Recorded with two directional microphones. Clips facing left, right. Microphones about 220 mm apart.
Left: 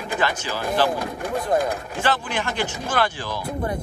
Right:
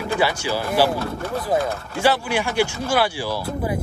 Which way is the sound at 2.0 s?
10° right (ahead or behind).